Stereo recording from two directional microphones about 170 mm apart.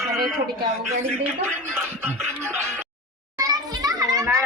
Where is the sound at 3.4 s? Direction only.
20° right (ahead or behind).